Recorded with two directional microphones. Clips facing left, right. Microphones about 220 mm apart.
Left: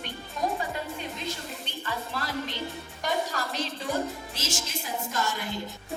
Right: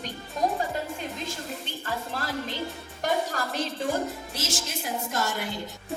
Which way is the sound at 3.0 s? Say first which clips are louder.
Right 2 dB; 50° right (ahead or behind).